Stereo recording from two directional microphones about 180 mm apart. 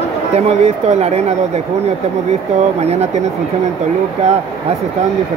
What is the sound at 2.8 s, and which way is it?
Speech, 40° right (ahead or behind).